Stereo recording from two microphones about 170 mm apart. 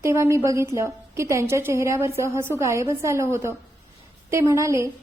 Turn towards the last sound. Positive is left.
turn(degrees=-15)  # may be behind; listen again after turning